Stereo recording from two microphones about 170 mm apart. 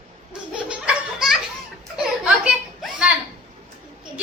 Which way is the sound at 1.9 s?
5° right (ahead or behind).